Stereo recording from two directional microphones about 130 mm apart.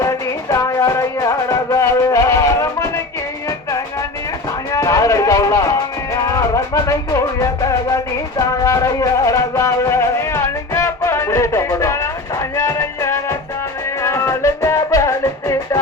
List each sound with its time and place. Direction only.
0.0 s music: 25° left (ahead or behind)
4.7 s a sound: 25° left (ahead or behind)
6.1 s music: 25° left (ahead or behind)